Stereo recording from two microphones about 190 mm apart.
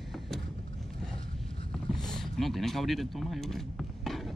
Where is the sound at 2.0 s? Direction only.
Centre (ahead or behind).